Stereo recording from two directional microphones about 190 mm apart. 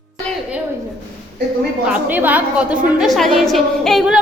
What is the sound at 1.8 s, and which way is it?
A woman's voice, 5° right (ahead or behind).